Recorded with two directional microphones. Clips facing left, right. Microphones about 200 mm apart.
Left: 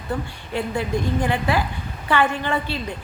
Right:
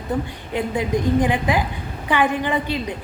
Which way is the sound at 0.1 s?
20° right (ahead or behind).